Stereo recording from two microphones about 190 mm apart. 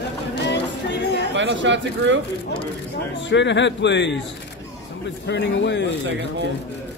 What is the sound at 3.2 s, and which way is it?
Speech, 70° left (ahead or behind).